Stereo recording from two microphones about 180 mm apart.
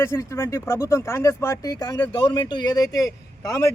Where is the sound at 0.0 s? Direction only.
15° left (ahead or behind).